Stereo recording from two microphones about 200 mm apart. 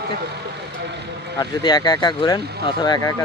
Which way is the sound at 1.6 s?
20° left (ahead or behind).